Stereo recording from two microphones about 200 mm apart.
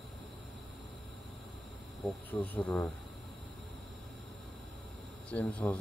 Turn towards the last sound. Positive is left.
turn(degrees=5)  # may be behind; listen again after turning